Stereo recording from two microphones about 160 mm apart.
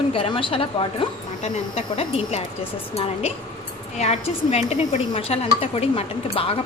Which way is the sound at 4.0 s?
45° left (ahead or behind).